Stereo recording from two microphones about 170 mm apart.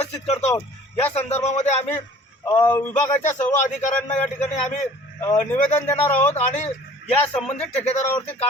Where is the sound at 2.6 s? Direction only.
10° left (ahead or behind).